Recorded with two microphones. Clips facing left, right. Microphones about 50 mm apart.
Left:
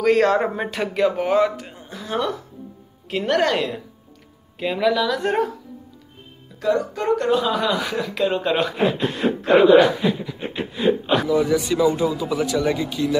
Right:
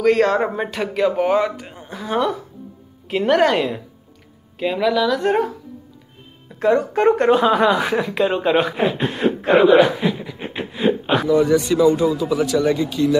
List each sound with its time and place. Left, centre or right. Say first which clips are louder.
0.0 s a man's voice: right 1 dB; centre
6.6 s speech: right 6 dB; right
8.2 s speech: right 2 dB; centre
10.0 s a sound: even; centre
11.2 s a man's voice: right 7 dB; centre